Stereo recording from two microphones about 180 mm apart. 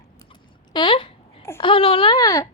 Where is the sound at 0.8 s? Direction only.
25° left (ahead or behind).